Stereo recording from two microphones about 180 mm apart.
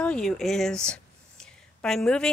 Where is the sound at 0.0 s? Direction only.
5° left (ahead or behind).